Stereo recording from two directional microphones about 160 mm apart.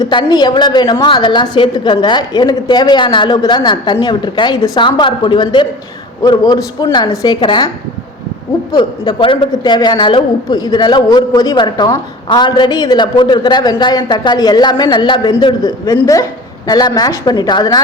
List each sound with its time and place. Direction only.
0.0 s a woman's voice: 30° left (ahead or behind)
8.7 s a woman's voice: 25° left (ahead or behind)